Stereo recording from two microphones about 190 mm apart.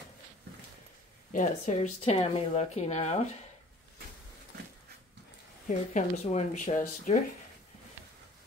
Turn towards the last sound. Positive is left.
turn(degrees=40)  # may be behind; listen again after turning